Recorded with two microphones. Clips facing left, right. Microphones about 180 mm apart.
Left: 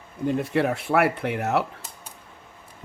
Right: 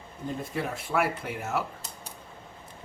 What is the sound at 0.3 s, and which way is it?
Speech, 75° left (ahead or behind).